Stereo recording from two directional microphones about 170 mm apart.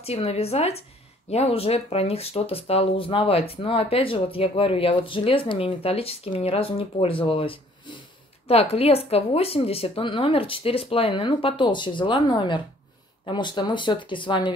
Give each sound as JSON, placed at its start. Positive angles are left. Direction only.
{"t": 0.0, "sound": "speech", "side_deg": 35}